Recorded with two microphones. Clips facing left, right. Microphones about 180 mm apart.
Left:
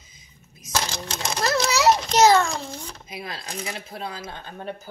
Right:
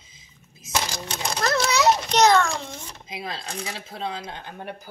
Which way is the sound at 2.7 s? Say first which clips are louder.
Left 1 dB; 20° right (ahead or behind).